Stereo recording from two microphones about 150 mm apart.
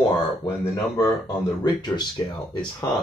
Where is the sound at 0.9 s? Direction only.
25° left (ahead or behind).